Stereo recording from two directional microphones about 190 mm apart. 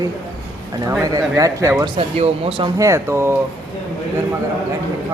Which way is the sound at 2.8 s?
15° right (ahead or behind).